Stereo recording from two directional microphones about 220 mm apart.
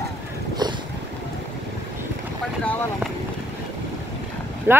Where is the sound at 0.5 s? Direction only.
20° right (ahead or behind).